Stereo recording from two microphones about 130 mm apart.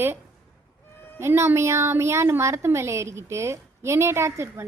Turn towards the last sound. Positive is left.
turn(degrees=-20)  # may be behind; listen again after turning